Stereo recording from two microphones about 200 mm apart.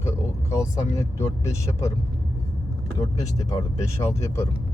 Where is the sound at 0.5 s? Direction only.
15° left (ahead or behind).